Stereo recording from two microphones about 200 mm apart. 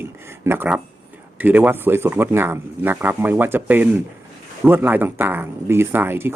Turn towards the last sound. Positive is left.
turn(degrees=-10)  # may be behind; listen again after turning